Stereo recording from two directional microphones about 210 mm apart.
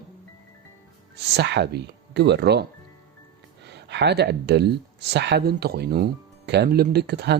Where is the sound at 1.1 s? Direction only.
55° right (ahead or behind).